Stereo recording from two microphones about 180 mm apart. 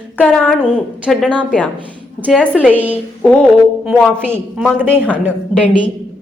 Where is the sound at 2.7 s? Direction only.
10° right (ahead or behind).